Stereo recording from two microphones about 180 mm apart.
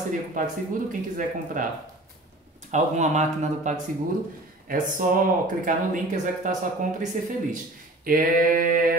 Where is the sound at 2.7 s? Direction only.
40° right (ahead or behind).